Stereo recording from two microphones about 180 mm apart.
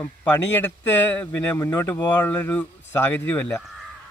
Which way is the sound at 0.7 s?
10° left (ahead or behind).